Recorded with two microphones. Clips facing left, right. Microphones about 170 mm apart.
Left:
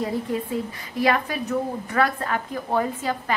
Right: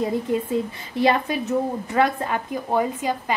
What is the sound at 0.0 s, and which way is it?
A woman's voice, 20° right (ahead or behind).